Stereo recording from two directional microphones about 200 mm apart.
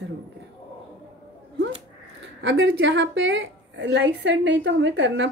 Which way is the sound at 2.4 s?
65° right (ahead or behind).